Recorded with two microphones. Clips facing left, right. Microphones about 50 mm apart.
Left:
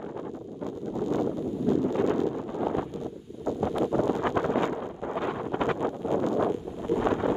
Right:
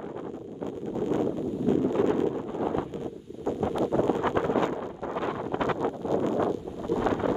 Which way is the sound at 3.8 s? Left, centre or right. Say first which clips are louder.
Right 2 dB; right.